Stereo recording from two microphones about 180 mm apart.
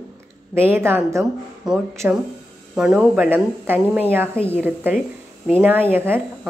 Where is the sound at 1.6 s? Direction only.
5° right (ahead or behind).